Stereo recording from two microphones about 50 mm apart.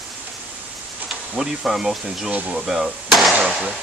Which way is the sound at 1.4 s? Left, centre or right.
Centre.